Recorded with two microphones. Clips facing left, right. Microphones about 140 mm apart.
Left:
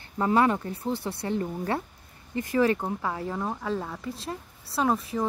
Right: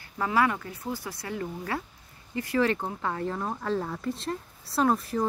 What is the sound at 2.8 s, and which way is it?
Speech, 10° left (ahead or behind).